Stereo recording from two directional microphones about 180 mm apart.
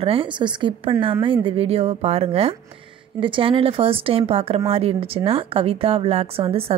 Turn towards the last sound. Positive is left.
turn(degrees=-30)  # may be behind; listen again after turning